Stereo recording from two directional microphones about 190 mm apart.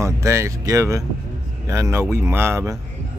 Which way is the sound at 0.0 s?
15° right (ahead or behind).